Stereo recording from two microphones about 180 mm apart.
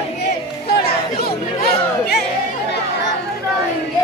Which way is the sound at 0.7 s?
60° left (ahead or behind).